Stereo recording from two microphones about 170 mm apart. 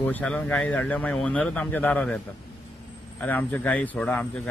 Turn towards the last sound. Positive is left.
turn(degrees=10)  # may be behind; listen again after turning